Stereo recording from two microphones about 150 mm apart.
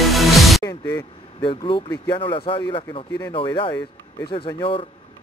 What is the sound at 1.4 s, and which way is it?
Vehicle, 35° left (ahead or behind).